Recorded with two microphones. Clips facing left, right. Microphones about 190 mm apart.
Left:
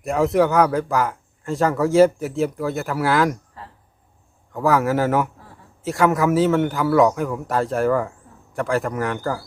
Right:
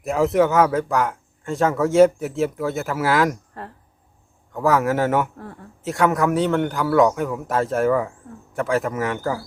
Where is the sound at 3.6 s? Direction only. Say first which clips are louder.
Right 5 dB; 60° right (ahead or behind).